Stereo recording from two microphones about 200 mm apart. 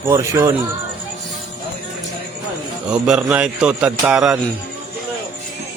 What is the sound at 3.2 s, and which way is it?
A man's voice, 5° right (ahead or behind).